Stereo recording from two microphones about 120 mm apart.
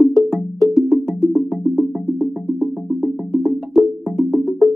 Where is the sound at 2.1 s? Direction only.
20° right (ahead or behind).